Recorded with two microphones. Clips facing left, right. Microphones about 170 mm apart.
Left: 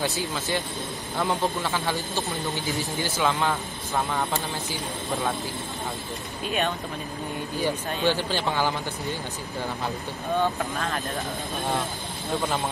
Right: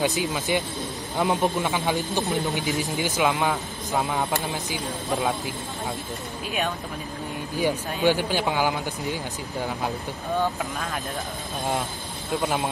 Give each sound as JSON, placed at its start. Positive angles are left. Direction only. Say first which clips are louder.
{"t": 0.0, "sound": "speech", "louder": "right 3 dB", "side_deg": -15}
{"t": 7.5, "sound": "speech", "louder": "right 3 dB", "side_deg": -15}
{"t": 12.4, "sound": "speech", "louder": "right 2 dB", "side_deg": -10}